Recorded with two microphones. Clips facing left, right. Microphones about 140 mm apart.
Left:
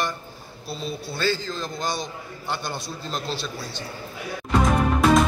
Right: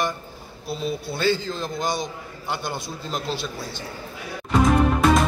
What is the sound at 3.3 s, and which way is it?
Speech, 50° right (ahead or behind).